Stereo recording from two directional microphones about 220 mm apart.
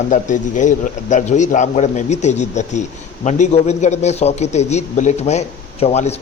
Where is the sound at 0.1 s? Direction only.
35° left (ahead or behind).